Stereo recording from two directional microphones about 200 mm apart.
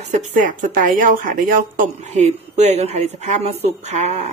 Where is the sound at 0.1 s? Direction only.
40° right (ahead or behind).